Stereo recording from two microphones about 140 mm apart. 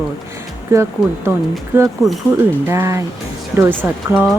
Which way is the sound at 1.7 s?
15° right (ahead or behind).